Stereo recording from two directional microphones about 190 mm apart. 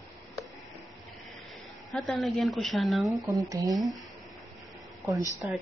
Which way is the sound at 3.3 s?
15° right (ahead or behind).